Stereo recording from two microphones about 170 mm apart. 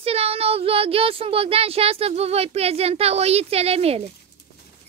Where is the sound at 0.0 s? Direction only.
35° right (ahead or behind).